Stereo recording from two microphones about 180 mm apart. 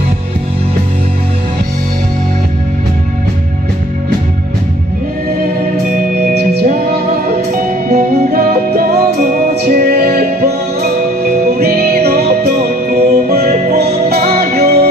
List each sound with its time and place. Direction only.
5.9 s music: 55° right (ahead or behind)